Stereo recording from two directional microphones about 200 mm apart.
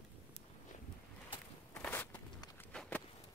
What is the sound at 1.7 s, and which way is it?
Walk, 10° left (ahead or behind).